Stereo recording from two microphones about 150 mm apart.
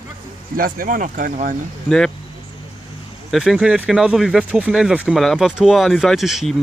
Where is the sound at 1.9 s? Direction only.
5° left (ahead or behind).